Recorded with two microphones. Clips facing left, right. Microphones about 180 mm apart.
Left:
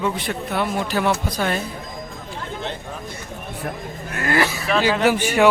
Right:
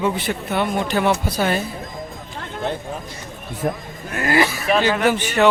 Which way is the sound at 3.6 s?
35° right (ahead or behind).